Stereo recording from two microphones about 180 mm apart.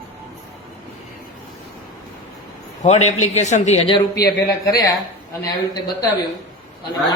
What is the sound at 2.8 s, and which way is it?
Speech, 40° left (ahead or behind).